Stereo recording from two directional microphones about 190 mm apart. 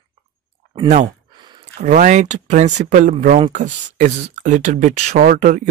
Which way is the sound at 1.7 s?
40° right (ahead or behind).